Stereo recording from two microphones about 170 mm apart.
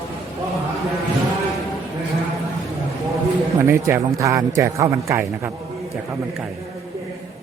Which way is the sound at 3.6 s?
15° right (ahead or behind).